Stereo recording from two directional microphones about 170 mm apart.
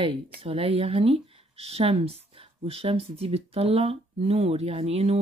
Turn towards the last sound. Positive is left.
turn(degrees=-35)  # may be behind; listen again after turning